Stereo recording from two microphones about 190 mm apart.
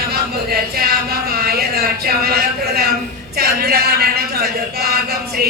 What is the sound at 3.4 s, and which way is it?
Speech, 55° right (ahead or behind).